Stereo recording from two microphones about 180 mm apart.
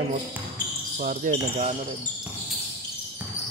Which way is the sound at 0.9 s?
45° right (ahead or behind).